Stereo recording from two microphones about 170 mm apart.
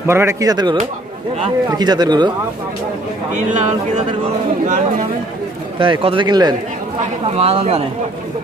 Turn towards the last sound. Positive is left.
turn(degrees=-35)  # may be behind; listen again after turning